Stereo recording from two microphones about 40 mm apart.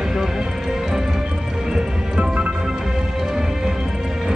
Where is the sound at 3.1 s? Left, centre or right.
Centre.